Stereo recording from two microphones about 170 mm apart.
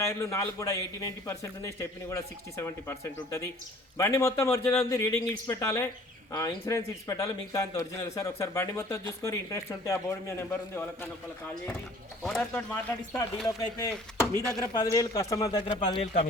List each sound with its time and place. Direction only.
0.0 s a man's voice: 15° left (ahead or behind)
16.0 s speech: 40° left (ahead or behind)